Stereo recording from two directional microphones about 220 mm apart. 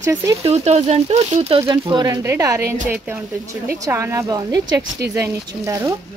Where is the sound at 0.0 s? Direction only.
15° right (ahead or behind).